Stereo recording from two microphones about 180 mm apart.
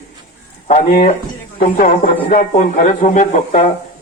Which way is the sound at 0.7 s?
45° left (ahead or behind).